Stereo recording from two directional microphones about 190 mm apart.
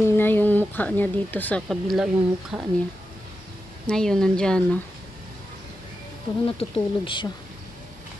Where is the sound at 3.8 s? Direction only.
5° left (ahead or behind).